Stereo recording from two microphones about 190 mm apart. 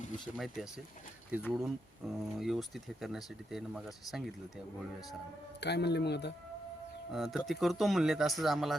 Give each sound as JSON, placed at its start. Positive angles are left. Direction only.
{"t": 0.3, "sound": "speech", "side_deg": 0}
{"t": 5.5, "sound": "speech", "side_deg": 60}
{"t": 7.1, "sound": "speech", "side_deg": 0}